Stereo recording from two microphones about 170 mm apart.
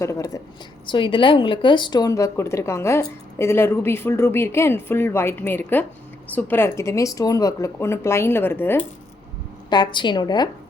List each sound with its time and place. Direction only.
0.0 s speech: 15° left (ahead or behind)
0.9 s speech: 30° left (ahead or behind); by 8.8 s 10° left (ahead or behind)
9.6 s speech: 25° left (ahead or behind)